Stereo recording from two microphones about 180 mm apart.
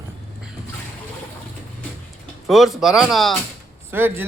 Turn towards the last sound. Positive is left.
turn(degrees=-10)  # may be behind; listen again after turning